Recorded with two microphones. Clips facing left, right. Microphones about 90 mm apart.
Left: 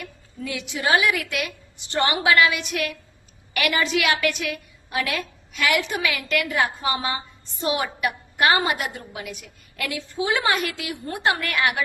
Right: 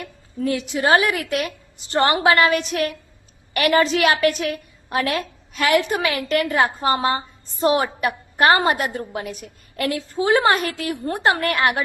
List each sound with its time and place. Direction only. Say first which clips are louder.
0.0 s a woman's voice: right 9 dB; 40° right (ahead or behind)